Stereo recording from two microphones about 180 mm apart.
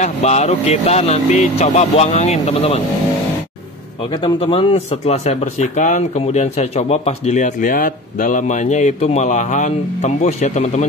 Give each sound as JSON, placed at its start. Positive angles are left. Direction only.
{"t": 0.0, "sound": "speech", "side_deg": 40}
{"t": 4.1, "sound": "speech", "side_deg": 30}